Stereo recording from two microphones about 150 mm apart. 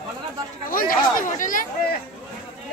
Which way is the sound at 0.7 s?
70° left (ahead or behind).